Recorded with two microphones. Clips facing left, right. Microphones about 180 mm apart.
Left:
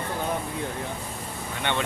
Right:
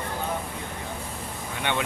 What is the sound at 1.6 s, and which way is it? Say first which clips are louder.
Speech: even; 10° right (ahead or behind).